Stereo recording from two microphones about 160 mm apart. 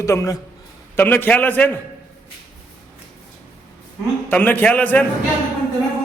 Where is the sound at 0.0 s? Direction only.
20° left (ahead or behind).